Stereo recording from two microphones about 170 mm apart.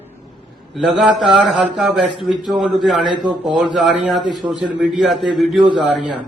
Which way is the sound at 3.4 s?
Centre (ahead or behind).